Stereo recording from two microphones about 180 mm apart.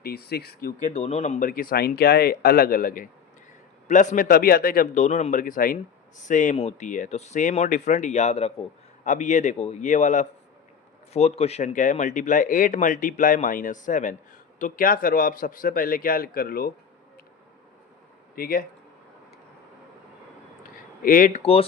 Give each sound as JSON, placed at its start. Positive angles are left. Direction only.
{"t": 0.0, "sound": "speech", "side_deg": 60}
{"t": 0.9, "sound": "speech", "side_deg": 35}
{"t": 1.7, "sound": "speech", "side_deg": 60}
{"t": 18.3, "sound": "speech", "side_deg": 55}
{"t": 21.0, "sound": "speech", "side_deg": 50}
{"t": 21.4, "sound": "speech", "side_deg": 30}